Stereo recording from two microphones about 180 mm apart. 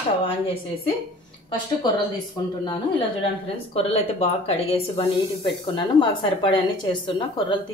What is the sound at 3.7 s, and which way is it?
A woman's voice, 35° left (ahead or behind).